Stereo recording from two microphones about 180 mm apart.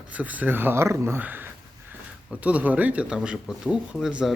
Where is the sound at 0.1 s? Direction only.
10° right (ahead or behind).